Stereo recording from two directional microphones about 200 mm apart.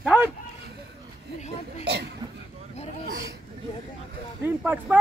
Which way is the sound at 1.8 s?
55° right (ahead or behind).